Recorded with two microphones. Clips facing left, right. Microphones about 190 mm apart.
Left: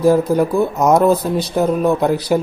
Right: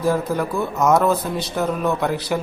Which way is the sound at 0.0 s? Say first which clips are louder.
Left 7 dB; 35° left (ahead or behind).